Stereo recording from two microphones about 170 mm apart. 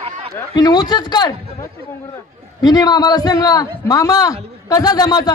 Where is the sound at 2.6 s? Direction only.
20° left (ahead or behind).